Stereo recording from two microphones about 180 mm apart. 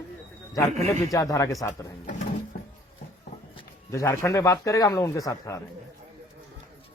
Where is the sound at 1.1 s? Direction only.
20° left (ahead or behind).